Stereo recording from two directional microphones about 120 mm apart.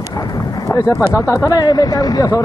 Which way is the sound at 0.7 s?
30° left (ahead or behind).